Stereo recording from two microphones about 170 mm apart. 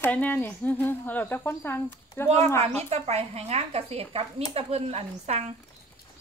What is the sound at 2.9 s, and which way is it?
A woman's voice, 40° right (ahead or behind).